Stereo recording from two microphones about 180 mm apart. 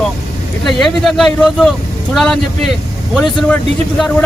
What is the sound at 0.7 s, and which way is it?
Speech, centre (ahead or behind).